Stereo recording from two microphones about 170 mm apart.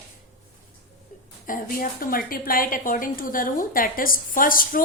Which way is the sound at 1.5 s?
55° left (ahead or behind).